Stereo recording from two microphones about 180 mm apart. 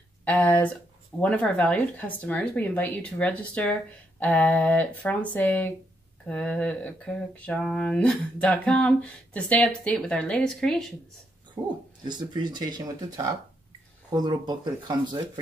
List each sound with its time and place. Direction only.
0.2 s speech: 10° left (ahead or behind)
6.2 s a sound: 5° left (ahead or behind)
12.0 s speech: 25° right (ahead or behind)